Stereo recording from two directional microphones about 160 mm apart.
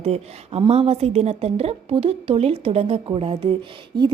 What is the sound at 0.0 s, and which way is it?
A woman's voice, 40° right (ahead or behind).